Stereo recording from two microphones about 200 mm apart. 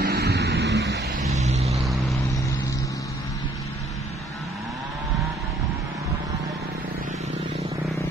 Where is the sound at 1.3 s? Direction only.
35° right (ahead or behind).